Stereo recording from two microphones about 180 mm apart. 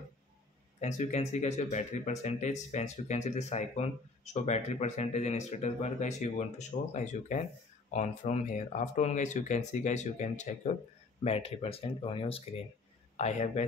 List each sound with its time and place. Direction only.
0.7 s speech: 40° left (ahead or behind)